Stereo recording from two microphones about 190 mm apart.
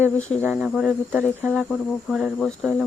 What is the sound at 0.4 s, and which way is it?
Speech, 5° right (ahead or behind).